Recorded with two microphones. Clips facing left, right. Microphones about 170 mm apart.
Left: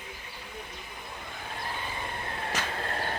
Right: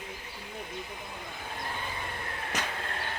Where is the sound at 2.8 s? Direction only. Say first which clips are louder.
Left 4 dB; 40° left (ahead or behind).